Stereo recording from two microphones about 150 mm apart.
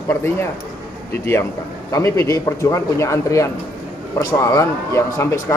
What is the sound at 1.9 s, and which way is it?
A man's voice, 20° left (ahead or behind).